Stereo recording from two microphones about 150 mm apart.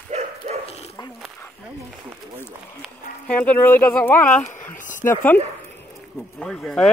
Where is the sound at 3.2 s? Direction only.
10° left (ahead or behind).